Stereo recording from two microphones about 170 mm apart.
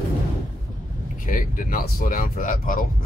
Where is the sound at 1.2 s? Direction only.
55° left (ahead or behind).